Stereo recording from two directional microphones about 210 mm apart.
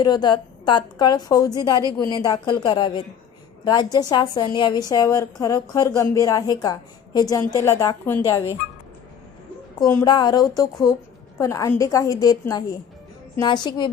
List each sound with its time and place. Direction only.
0.0 s a woman's voice: 20° left (ahead or behind)
9.8 s a woman's voice: 15° left (ahead or behind)